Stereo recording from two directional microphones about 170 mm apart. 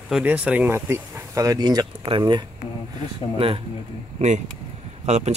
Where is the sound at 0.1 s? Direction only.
10° right (ahead or behind); by 3.6 s 35° right (ahead or behind).